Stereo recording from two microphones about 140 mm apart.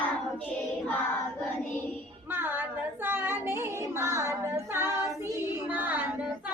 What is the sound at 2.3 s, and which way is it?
Female singing, 15° right (ahead or behind).